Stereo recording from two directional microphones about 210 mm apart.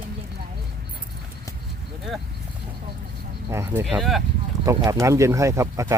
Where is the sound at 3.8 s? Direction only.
Centre (ahead or behind).